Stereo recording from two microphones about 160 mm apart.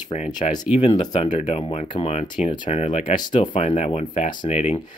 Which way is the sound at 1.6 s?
35° left (ahead or behind).